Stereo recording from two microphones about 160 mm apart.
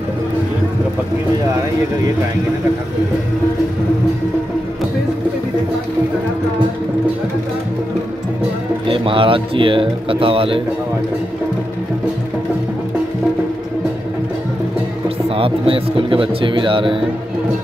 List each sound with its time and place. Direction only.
8.8 s speech: 35° right (ahead or behind)
15.2 s speech: 35° right (ahead or behind)